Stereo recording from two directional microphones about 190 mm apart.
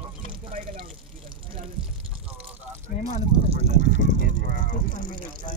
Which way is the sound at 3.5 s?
40° right (ahead or behind).